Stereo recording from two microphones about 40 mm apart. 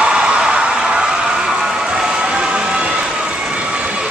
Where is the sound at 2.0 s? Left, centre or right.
Right.